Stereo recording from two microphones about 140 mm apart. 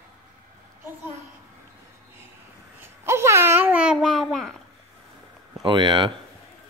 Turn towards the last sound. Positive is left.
turn(degrees=-35)  # may be behind; listen again after turning